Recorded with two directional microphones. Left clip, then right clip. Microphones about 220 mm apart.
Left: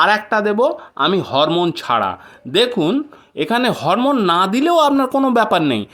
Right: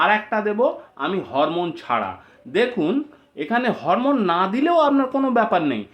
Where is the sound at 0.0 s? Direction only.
45° left (ahead or behind).